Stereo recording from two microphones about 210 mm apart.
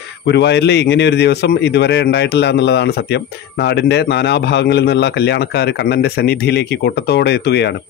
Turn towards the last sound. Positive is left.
turn(degrees=50)  # may be behind; listen again after turning